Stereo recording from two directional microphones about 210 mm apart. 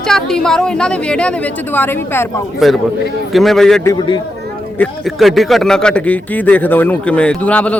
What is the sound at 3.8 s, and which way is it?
Speech, 15° left (ahead or behind).